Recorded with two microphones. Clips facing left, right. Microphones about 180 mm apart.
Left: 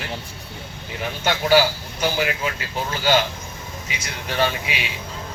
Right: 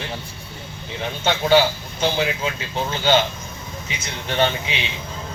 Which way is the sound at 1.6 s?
25° right (ahead or behind).